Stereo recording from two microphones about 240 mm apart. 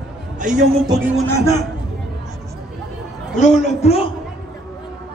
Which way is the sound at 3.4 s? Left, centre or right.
Left.